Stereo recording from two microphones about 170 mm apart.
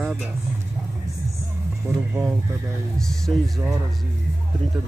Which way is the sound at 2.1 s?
15° right (ahead or behind).